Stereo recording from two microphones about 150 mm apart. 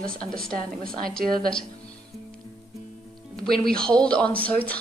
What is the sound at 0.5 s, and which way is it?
Speech, 75° right (ahead or behind).